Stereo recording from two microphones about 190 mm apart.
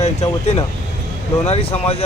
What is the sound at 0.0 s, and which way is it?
Speech, 35° left (ahead or behind).